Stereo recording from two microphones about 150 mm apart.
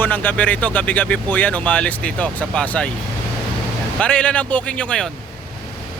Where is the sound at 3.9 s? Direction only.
5° left (ahead or behind).